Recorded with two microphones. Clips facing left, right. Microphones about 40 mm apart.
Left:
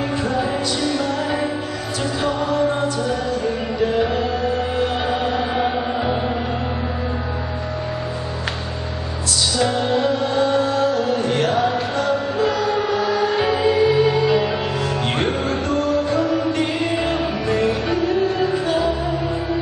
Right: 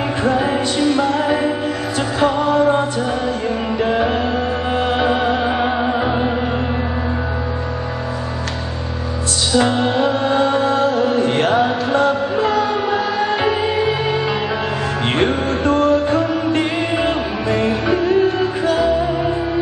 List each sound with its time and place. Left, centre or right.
0.2 s music: right
3.8 s music: right
9.6 s music: right
15.0 s music: right